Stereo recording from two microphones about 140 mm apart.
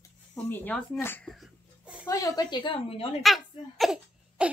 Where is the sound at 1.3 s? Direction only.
5° right (ahead or behind).